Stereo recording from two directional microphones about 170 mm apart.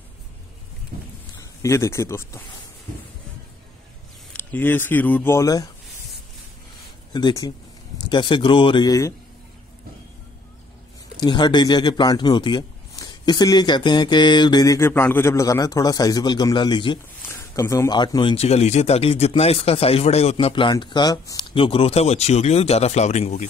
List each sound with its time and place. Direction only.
1.4 s speech: 15° left (ahead or behind)
4.3 s speech: 10° left (ahead or behind)
7.1 s speech: 25° left (ahead or behind)
11.1 s speech: 25° left (ahead or behind)
21.5 s speech: 35° left (ahead or behind)